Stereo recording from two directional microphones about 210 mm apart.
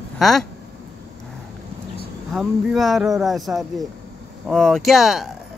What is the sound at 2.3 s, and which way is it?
Speech, centre (ahead or behind).